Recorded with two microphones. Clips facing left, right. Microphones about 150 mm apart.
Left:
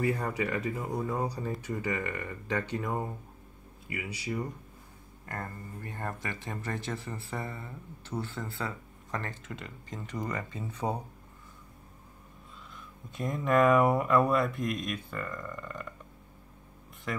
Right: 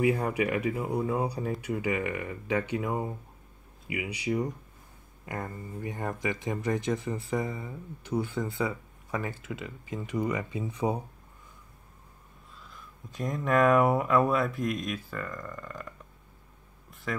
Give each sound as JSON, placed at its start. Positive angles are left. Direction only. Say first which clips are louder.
{"t": 0.0, "sound": "speech", "louder": "right 4 dB", "side_deg": -15}
{"t": 12.7, "sound": "speech", "louder": "right 1 dB", "side_deg": 0}
{"t": 17.1, "sound": "speech", "louder": "right 2 dB", "side_deg": 0}